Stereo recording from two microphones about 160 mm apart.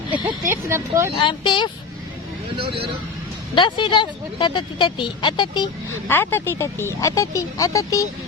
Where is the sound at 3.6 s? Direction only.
30° left (ahead or behind).